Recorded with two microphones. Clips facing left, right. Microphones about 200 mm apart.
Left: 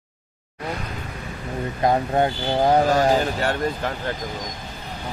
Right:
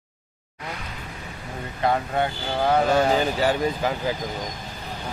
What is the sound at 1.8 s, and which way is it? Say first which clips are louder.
Speech: left 3 dB; 40° left (ahead or behind).